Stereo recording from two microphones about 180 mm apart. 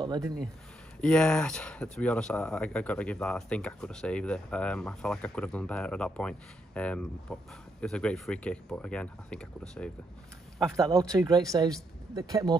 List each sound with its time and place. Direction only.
0.0 s speech: 25° right (ahead or behind)
1.0 s speech: 5° left (ahead or behind)
10.8 s speech: 20° right (ahead or behind)